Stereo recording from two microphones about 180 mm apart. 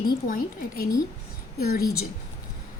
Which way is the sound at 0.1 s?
55° left (ahead or behind).